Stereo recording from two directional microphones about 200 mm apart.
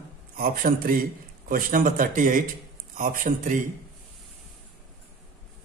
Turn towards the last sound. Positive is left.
turn(degrees=-40)  # may be behind; listen again after turning